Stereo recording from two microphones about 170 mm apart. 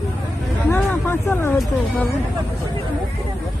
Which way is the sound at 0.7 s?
15° left (ahead or behind).